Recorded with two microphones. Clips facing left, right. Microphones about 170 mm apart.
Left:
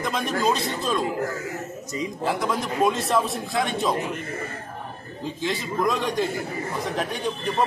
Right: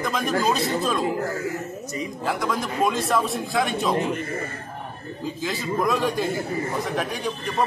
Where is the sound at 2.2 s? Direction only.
Centre (ahead or behind).